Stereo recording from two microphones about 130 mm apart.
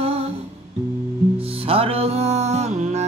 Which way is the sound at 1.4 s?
45° right (ahead or behind).